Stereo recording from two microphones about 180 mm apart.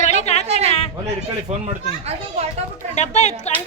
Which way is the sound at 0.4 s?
35° right (ahead or behind).